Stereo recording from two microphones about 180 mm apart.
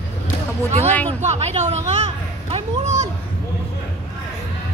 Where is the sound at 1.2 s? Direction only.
40° right (ahead or behind).